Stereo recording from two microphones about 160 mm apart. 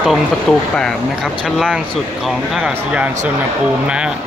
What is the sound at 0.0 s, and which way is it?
Speech, centre (ahead or behind).